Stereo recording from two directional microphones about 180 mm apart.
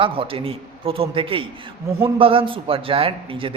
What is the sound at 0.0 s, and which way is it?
A man's voice, 30° right (ahead or behind).